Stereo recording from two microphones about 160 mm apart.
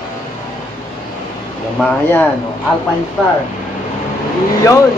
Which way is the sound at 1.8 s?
10° left (ahead or behind).